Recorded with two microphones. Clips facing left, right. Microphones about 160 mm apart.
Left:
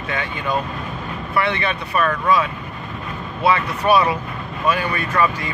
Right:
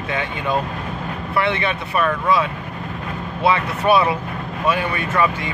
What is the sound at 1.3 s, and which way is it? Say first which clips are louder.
Speech: right 1 dB; 20° right (ahead or behind).